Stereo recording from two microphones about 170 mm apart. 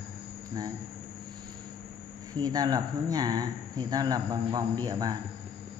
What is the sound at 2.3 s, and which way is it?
Speech, 20° right (ahead or behind).